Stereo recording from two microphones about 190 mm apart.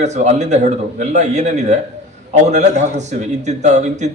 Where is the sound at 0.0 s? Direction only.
35° right (ahead or behind).